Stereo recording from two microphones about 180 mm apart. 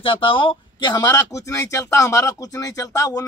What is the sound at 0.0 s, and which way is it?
Speech, 30° left (ahead or behind).